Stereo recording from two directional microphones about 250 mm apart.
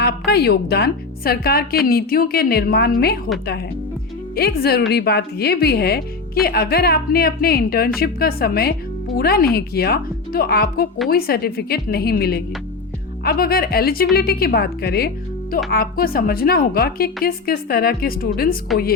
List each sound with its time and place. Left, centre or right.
0.0 s a woman's voice: left
4.4 s a woman's voice: left